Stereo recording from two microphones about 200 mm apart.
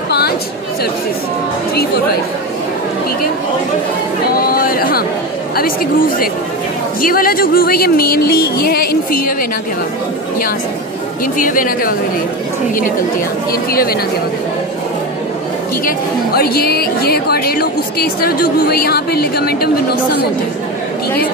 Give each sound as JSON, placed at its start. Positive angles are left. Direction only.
{"t": 4.3, "sound": "a sound", "side_deg": 50}
{"t": 5.6, "sound": "speech", "side_deg": 45}
{"t": 11.3, "sound": "speech", "side_deg": 45}
{"t": 13.5, "sound": "speech", "side_deg": 45}
{"t": 16.3, "sound": "speech", "side_deg": 50}